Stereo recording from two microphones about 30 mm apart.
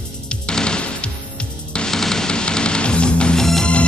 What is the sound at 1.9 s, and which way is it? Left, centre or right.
Music, centre.